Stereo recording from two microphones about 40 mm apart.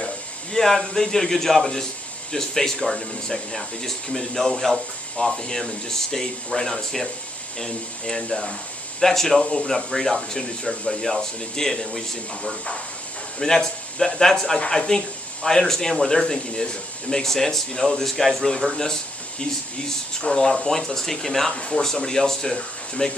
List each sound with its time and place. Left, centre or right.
0.5 s speech: centre
9.4 s speech: centre
13.4 s speech: centre
18.7 s speech: centre
20.2 s speech: centre
21.5 s speech: centre